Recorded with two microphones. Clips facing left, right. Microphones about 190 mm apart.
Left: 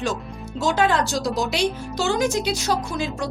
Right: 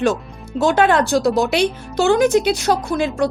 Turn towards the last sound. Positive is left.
turn(degrees=-60)  # may be behind; listen again after turning